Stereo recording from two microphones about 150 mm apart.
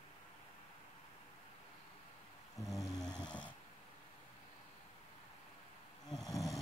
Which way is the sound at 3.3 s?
10° left (ahead or behind).